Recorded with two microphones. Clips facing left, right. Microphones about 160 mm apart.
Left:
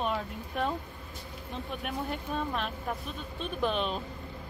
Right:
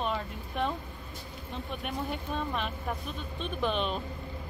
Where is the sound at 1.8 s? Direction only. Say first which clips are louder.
Even; centre (ahead or behind).